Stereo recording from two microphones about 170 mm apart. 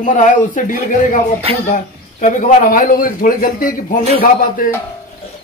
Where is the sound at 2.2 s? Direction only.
50° left (ahead or behind).